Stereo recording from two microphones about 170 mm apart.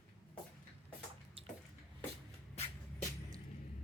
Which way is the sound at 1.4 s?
35° right (ahead or behind).